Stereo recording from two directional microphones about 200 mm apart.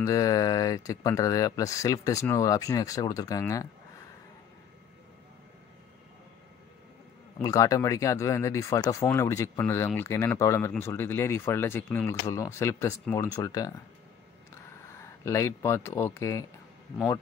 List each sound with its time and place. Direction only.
0.0 s speech: 15° left (ahead or behind)
7.4 s speech: 15° left (ahead or behind)
14.9 s speech: 15° left (ahead or behind)